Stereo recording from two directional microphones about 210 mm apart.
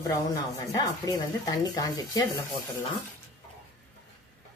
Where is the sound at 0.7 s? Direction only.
15° left (ahead or behind).